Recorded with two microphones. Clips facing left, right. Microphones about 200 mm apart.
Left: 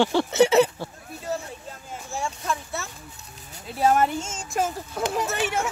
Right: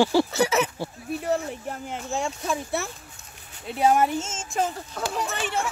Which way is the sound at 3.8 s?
10° right (ahead or behind).